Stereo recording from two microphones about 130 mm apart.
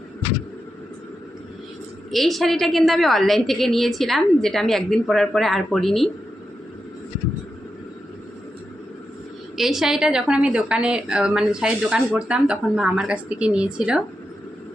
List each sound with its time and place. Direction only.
2.0 s a woman's voice: centre (ahead or behind)
9.6 s a woman's voice: centre (ahead or behind)